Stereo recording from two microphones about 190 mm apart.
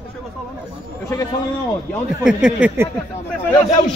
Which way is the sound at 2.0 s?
5° right (ahead or behind).